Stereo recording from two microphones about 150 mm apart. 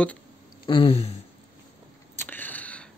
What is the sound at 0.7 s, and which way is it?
Speech, 40° left (ahead or behind).